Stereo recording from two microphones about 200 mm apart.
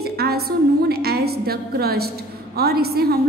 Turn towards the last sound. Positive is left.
turn(degrees=-50)  # may be behind; listen again after turning